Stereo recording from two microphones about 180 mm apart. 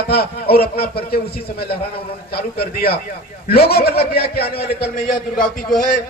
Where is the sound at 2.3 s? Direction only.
60° left (ahead or behind).